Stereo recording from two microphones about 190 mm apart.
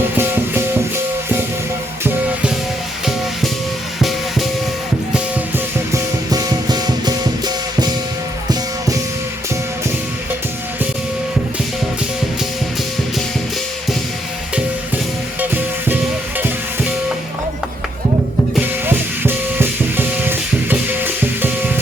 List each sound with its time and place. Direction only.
0.2 s music: 10° right (ahead or behind)
5.9 s music: 20° right (ahead or behind)
15.4 s music: 10° right (ahead or behind)
18.5 s music: 10° right (ahead or behind)